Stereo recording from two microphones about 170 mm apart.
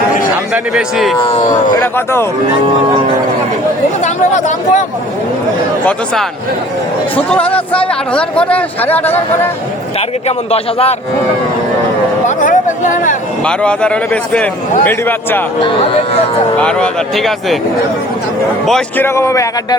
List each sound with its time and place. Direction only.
0.5 s speech: 5° right (ahead or behind)
1.2 s speech: 40° left (ahead or behind)
1.7 s speech: 15° left (ahead or behind)
4.0 s speech: 45° left (ahead or behind)
7.3 s speech: 10° left (ahead or behind)
10.2 s speech: 35° left (ahead or behind)
12.4 s a sound: 50° left (ahead or behind)
13.4 s speech: 5° left (ahead or behind)
15.6 s speech: 35° left (ahead or behind)
16.6 s speech: 5° left (ahead or behind)
18.6 s speech: centre (ahead or behind)
19.0 s speech: 15° left (ahead or behind)